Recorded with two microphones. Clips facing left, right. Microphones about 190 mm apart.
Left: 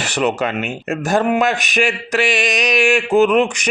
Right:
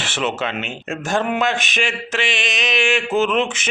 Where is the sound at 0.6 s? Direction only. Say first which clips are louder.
Left 5 dB; centre (ahead or behind).